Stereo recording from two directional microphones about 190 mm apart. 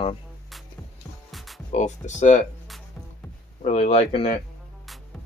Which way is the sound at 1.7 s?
40° left (ahead or behind).